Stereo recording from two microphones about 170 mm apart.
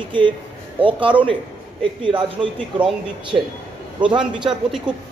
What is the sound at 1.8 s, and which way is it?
A man's voice, 30° right (ahead or behind).